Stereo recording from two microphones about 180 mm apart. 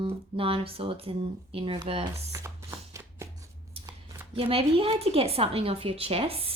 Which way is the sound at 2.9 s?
15° right (ahead or behind).